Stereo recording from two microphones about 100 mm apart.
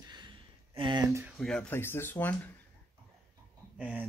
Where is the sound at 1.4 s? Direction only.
5° left (ahead or behind).